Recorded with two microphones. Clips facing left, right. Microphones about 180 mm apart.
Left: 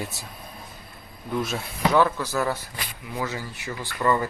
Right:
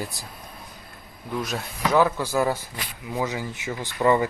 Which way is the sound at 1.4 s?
Centre (ahead or behind).